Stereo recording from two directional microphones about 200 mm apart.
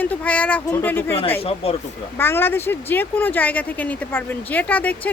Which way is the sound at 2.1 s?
10° left (ahead or behind).